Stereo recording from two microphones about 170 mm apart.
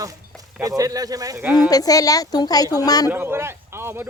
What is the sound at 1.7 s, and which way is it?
A woman's voice, 20° left (ahead or behind).